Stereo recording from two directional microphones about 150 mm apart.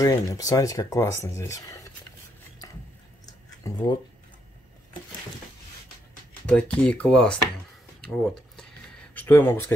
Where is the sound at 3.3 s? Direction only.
25° left (ahead or behind).